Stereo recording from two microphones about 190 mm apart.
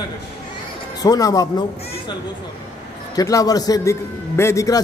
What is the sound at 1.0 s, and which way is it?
Speech, 20° left (ahead or behind).